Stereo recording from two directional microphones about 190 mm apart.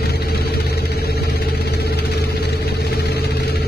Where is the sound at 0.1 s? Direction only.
55° left (ahead or behind).